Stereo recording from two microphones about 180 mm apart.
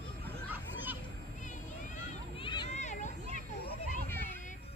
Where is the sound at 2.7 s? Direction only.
40° left (ahead or behind).